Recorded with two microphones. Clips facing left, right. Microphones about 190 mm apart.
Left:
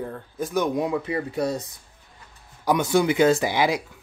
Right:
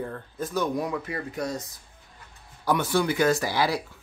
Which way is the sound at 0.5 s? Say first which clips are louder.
Left 4 dB; 20° left (ahead or behind).